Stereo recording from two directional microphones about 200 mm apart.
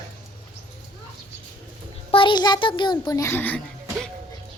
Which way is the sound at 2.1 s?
25° left (ahead or behind).